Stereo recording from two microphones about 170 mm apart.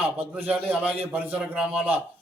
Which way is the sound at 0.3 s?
10° right (ahead or behind).